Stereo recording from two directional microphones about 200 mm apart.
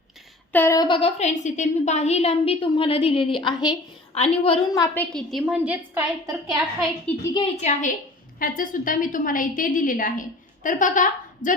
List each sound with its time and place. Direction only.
0.5 s a woman's voice: 15° left (ahead or behind)
5.1 s a woman's voice: centre (ahead or behind)
7.6 s a woman's voice: 35° left (ahead or behind)